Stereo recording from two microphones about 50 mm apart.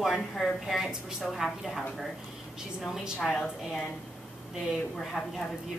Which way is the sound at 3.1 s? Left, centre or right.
Left.